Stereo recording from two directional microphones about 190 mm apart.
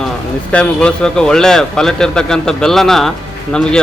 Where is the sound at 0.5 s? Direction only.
5° left (ahead or behind).